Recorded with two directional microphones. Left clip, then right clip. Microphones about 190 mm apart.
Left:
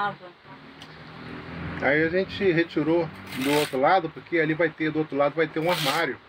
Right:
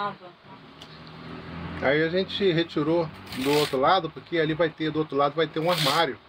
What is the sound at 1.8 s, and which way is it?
Speech, 10° right (ahead or behind).